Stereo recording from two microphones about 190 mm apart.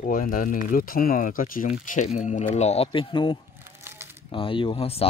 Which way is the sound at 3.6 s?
15° right (ahead or behind).